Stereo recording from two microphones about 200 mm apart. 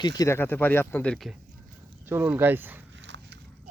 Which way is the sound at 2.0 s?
10° right (ahead or behind).